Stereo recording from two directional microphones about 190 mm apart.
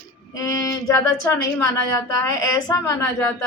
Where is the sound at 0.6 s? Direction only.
15° left (ahead or behind).